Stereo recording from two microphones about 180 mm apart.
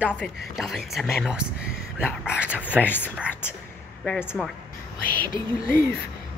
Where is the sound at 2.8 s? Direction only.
10° left (ahead or behind).